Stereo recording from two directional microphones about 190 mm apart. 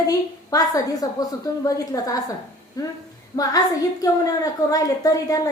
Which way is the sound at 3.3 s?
15° left (ahead or behind).